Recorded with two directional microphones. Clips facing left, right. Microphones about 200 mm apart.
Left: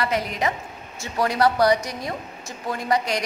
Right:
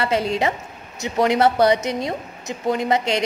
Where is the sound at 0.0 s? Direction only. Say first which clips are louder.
Right 4 dB; 30° right (ahead or behind).